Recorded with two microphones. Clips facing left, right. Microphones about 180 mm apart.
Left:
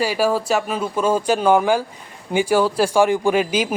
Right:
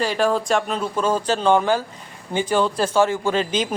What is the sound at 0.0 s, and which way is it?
Speech, 5° left (ahead or behind).